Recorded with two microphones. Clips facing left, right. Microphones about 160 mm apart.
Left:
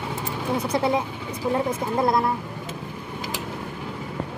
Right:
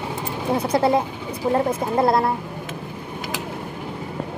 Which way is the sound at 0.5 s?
30° right (ahead or behind).